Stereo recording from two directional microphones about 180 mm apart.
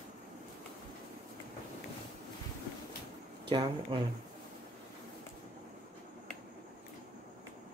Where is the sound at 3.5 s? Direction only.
30° right (ahead or behind).